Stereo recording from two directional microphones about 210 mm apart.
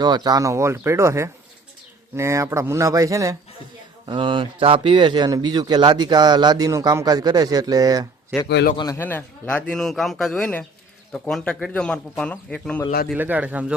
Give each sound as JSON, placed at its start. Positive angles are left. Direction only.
{"t": 0.0, "sound": "speech", "side_deg": -20}
{"t": 8.4, "sound": "a man's voice", "side_deg": 55}
{"t": 8.7, "sound": "speech", "side_deg": 20}
{"t": 13.1, "sound": "speech", "side_deg": -10}